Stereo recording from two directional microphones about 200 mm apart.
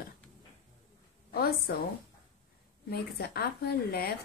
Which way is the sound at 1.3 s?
50° left (ahead or behind).